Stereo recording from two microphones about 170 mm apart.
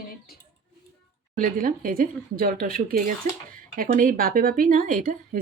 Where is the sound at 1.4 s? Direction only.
55° right (ahead or behind).